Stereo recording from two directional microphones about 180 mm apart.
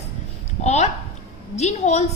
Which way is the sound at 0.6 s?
40° left (ahead or behind).